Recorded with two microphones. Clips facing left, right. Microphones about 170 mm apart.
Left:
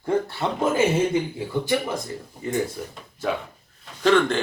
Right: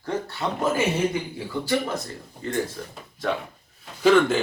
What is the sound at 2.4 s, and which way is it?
Speech, 10° left (ahead or behind).